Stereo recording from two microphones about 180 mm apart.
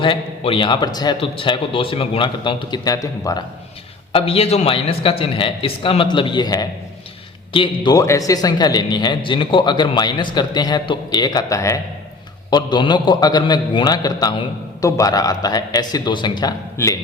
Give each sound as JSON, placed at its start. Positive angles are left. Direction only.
{"t": 0.0, "sound": "a man's voice", "side_deg": 30}
{"t": 4.1, "sound": "a man's voice", "side_deg": 30}